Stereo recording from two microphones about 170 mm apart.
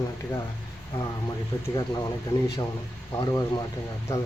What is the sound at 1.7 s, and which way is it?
Speech, 20° left (ahead or behind).